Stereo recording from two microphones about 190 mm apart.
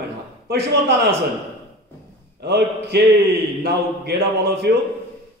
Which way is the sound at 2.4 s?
60° right (ahead or behind).